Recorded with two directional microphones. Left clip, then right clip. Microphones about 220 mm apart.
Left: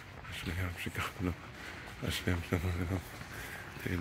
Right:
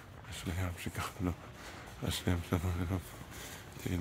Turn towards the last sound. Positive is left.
turn(degrees=-15)  # may be behind; listen again after turning